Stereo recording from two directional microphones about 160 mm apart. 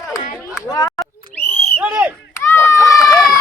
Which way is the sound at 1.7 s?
10° right (ahead or behind).